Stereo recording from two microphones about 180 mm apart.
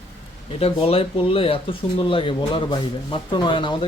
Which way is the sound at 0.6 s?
30° left (ahead or behind).